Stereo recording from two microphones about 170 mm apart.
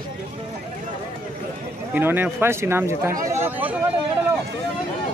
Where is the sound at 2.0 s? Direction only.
10° right (ahead or behind).